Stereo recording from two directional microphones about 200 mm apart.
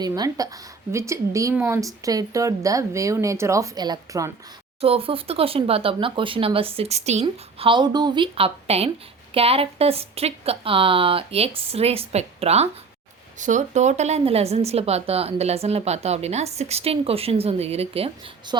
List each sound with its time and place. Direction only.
0.0 s a woman's voice: 20° right (ahead or behind)